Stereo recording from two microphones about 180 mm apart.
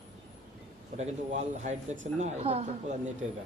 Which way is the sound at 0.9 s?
40° right (ahead or behind).